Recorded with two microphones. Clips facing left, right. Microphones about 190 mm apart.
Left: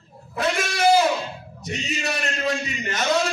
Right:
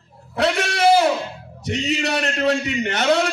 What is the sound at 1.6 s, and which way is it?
A man's voice, 70° right (ahead or behind).